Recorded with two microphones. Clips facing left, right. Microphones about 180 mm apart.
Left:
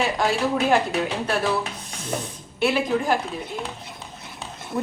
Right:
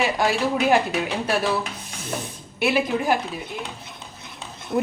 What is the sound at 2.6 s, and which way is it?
Speech, 5° right (ahead or behind).